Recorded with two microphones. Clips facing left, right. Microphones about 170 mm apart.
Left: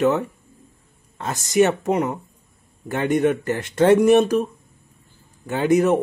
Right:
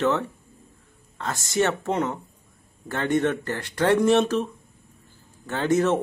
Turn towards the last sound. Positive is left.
turn(degrees=15)  # may be behind; listen again after turning